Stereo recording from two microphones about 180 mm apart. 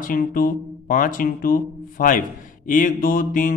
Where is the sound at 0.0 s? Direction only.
50° left (ahead or behind).